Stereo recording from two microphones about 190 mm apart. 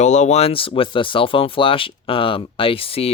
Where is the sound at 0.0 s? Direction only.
40° left (ahead or behind).